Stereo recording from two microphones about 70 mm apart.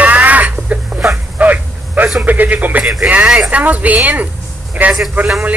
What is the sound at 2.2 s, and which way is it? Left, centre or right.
A woman's voice, right.